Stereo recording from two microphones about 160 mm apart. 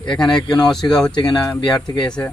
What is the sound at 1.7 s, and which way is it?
Speech, 30° left (ahead or behind).